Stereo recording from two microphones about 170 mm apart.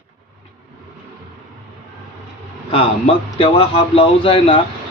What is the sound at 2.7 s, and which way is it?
A man's voice, 30° left (ahead or behind).